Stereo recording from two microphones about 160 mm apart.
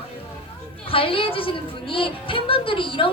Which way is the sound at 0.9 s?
35° left (ahead or behind).